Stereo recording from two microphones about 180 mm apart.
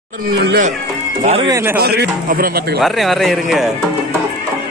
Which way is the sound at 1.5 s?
15° right (ahead or behind).